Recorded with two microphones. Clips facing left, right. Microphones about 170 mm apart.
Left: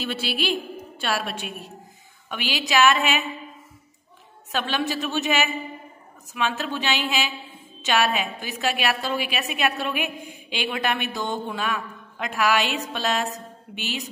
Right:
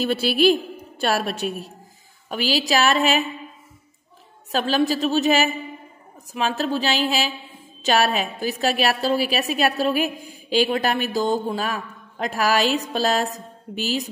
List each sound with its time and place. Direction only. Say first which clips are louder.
0.0 s a woman's voice: right 9 dB; 40° right (ahead or behind)
4.5 s a woman's voice: right 6 dB; 35° right (ahead or behind)